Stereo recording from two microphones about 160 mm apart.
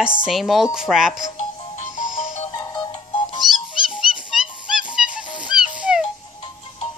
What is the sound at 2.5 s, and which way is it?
Music, 25° left (ahead or behind).